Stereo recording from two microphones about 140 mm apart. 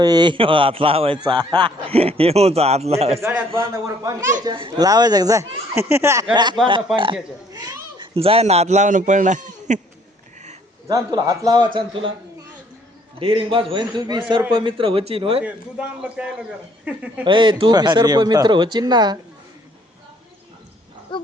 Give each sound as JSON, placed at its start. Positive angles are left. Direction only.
{"t": 0.0, "sound": "speech", "side_deg": -30}
{"t": 3.2, "sound": "a man's voice", "side_deg": -20}
{"t": 4.4, "sound": "a man's voice", "side_deg": -35}
{"t": 6.3, "sound": "speech", "side_deg": -30}
{"t": 10.8, "sound": "a man's voice", "side_deg": -30}
{"t": 13.1, "sound": "speech", "side_deg": -40}
{"t": 15.4, "sound": "a man's voice", "side_deg": -10}
{"t": 17.2, "sound": "speech", "side_deg": -35}